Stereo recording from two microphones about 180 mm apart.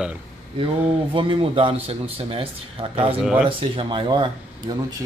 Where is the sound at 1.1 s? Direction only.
30° right (ahead or behind).